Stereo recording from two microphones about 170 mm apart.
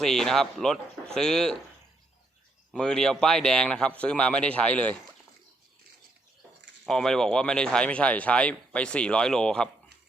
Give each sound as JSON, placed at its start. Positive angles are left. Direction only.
{"t": 0.0, "sound": "speech", "side_deg": 0}
{"t": 2.7, "sound": "speech", "side_deg": 5}
{"t": 6.8, "sound": "speech", "side_deg": 5}